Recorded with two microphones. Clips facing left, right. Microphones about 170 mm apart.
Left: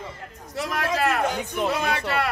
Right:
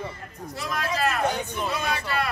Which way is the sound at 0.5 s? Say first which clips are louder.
Left 3 dB; 70° left (ahead or behind).